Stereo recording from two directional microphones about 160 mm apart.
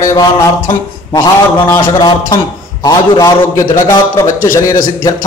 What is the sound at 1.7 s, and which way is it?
A man's voice, 25° left (ahead or behind).